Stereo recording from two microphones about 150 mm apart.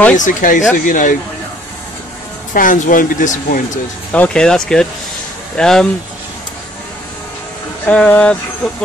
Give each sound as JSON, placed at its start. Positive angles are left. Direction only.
{"t": 0.2, "sound": "speech", "side_deg": 60}
{"t": 2.5, "sound": "speech", "side_deg": 60}
{"t": 4.1, "sound": "speech", "side_deg": 5}
{"t": 7.8, "sound": "speech", "side_deg": 10}